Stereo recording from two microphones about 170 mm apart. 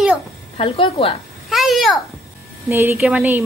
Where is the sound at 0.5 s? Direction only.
30° left (ahead or behind).